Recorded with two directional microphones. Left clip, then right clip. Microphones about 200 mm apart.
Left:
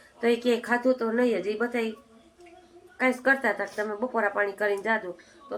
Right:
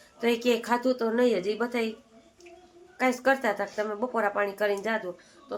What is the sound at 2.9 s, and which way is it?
A woman's voice, 5° right (ahead or behind).